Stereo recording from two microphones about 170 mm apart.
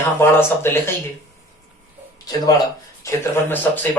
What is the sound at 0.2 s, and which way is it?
Speech, 15° left (ahead or behind).